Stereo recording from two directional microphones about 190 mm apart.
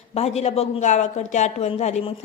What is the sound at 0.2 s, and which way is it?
Speech, 35° left (ahead or behind).